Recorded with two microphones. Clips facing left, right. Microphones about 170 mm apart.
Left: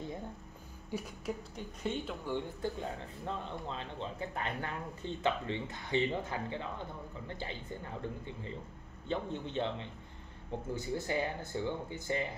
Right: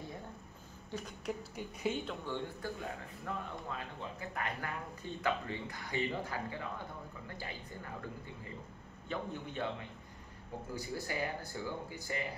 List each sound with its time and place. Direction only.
0.9 s a man's voice: 5° left (ahead or behind)
1.8 s speech: 5° right (ahead or behind)
2.2 s a man's voice: 15° left (ahead or behind)
2.8 s speech: 25° left (ahead or behind)
9.1 s speech: 25° left (ahead or behind)